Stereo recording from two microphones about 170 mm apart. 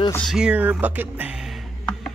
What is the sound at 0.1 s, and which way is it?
Speech, centre (ahead or behind).